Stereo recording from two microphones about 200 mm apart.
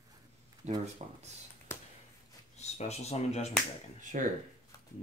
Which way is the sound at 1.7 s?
15° left (ahead or behind).